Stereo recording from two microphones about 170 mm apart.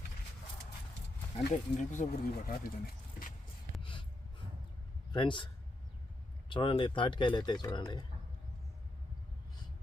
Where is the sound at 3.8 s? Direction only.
30° left (ahead or behind).